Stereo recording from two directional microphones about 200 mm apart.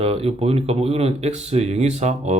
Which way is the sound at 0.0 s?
30° right (ahead or behind).